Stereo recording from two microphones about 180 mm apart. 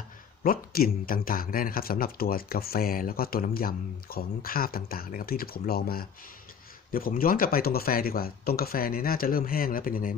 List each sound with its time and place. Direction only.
0.4 s speech: 55° left (ahead or behind)